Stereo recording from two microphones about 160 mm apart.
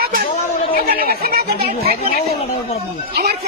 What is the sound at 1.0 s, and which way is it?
Speech, 70° right (ahead or behind).